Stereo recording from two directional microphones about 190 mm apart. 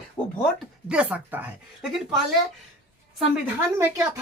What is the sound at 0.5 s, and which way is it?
Speech, 5° right (ahead or behind).